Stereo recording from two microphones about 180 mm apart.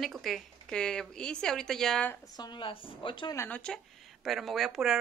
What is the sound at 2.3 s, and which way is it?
Speech, 25° left (ahead or behind).